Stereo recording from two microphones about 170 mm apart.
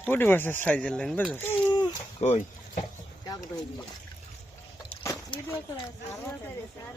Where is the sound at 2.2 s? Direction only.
45° left (ahead or behind).